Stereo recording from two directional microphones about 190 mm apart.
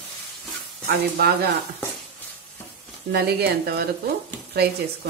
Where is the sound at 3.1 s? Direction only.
55° right (ahead or behind).